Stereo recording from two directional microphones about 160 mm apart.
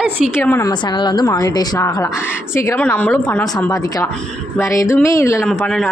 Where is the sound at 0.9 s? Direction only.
25° left (ahead or behind).